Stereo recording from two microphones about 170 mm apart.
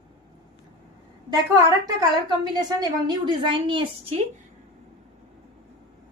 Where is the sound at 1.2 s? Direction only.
25° right (ahead or behind).